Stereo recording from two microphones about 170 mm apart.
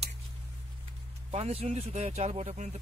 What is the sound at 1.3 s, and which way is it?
Speech, 35° right (ahead or behind).